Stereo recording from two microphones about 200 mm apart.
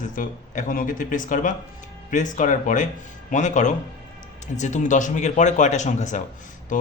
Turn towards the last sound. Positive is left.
turn(degrees=40)  # may be behind; listen again after turning